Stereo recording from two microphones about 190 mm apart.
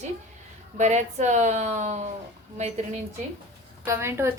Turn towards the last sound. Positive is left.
turn(degrees=-15)  # may be behind; listen again after turning